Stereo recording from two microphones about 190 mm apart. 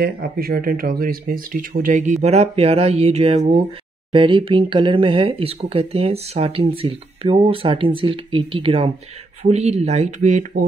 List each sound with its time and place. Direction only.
0.0 s speech: 55° right (ahead or behind)